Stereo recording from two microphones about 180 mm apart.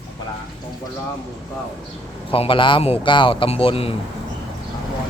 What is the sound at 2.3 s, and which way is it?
Speech, 30° left (ahead or behind).